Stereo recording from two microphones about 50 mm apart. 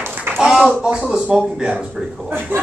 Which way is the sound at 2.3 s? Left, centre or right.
Right.